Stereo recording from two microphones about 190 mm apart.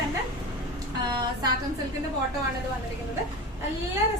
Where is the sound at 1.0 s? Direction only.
20° right (ahead or behind).